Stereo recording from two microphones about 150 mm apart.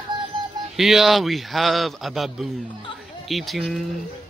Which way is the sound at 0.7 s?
Centre (ahead or behind).